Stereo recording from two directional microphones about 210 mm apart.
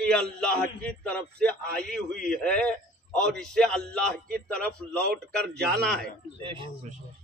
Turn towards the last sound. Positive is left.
turn(degrees=-25)  # may be behind; listen again after turning